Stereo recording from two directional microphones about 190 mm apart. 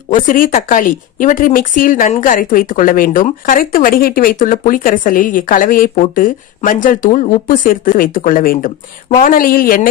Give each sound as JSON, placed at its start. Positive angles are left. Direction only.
{"t": 0.1, "sound": "speech", "side_deg": 45}